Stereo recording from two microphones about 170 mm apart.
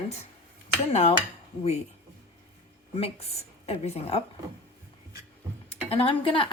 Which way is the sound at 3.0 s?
40° left (ahead or behind).